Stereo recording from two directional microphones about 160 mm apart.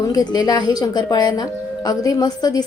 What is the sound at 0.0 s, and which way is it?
A woman's voice, 25° left (ahead or behind).